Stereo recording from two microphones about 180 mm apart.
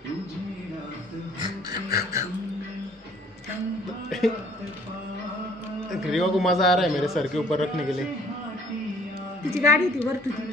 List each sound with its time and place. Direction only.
1.4 s a sound: 20° right (ahead or behind)
5.9 s a man's voice: centre (ahead or behind)
9.5 s a woman's voice: 15° right (ahead or behind)